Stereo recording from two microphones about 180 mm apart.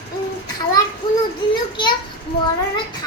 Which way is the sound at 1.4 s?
25° left (ahead or behind).